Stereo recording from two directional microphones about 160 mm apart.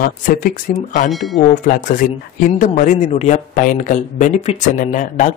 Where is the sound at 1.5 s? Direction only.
55° left (ahead or behind).